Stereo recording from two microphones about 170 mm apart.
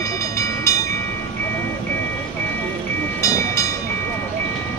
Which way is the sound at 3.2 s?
20° left (ahead or behind).